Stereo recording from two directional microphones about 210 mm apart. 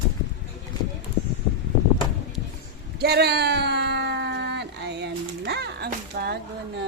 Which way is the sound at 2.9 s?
50° right (ahead or behind).